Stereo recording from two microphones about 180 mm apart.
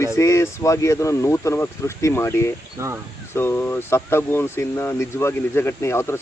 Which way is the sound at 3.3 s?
10° left (ahead or behind).